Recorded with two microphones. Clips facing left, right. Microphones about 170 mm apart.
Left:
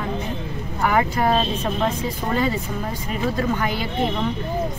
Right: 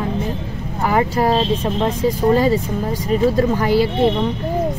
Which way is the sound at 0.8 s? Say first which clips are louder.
Right 3 dB; 35° right (ahead or behind).